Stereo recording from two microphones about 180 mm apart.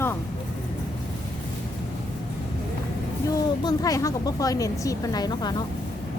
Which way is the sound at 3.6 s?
20° left (ahead or behind).